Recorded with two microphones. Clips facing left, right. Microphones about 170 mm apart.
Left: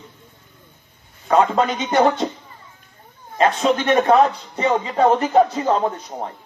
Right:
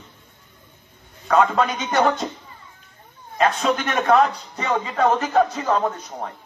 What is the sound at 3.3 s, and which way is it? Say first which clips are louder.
A man's voice: left 3 dB; 25° left (ahead or behind).